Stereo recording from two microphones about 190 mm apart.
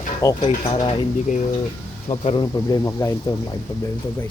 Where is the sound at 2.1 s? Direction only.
30° left (ahead or behind).